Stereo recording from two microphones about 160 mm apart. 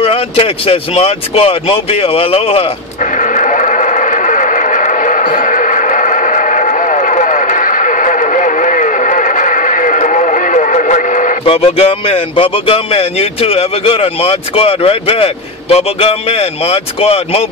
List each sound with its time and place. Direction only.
0.0 s speech: 35° left (ahead or behind)
3.2 s a sound: 50° left (ahead or behind)
11.4 s speech: 35° left (ahead or behind)